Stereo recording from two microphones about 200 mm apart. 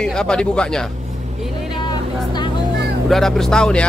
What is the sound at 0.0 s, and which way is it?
Speech, 5° left (ahead or behind).